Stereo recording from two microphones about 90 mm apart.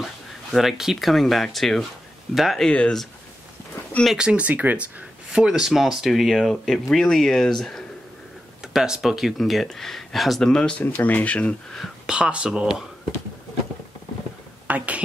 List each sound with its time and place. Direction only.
0.0 s speech: centre (ahead or behind)
2.7 s speech: 10° left (ahead or behind)
4.2 s speech: 15° right (ahead or behind); by 10.8 s 10° left (ahead or behind)
10.8 s speech: 20° left (ahead or behind)
11.8 s speech: 10° right (ahead or behind)
14.7 s speech: 15° right (ahead or behind)